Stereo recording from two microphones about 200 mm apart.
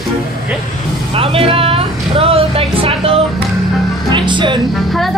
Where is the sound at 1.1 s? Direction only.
25° right (ahead or behind).